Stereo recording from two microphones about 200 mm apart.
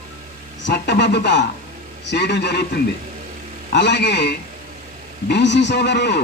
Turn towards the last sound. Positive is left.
turn(degrees=60)  # may be behind; listen again after turning